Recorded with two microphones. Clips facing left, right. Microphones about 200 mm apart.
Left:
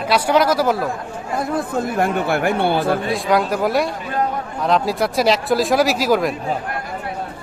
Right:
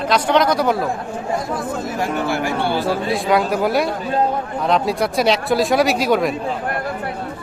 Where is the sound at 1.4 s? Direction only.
60° left (ahead or behind).